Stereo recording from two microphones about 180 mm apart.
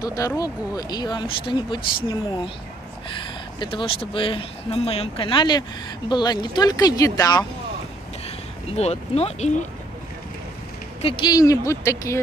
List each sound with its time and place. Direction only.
0.0 s speech: 20° left (ahead or behind)
8.7 s speech: 35° left (ahead or behind)
11.0 s speech: 30° left (ahead or behind)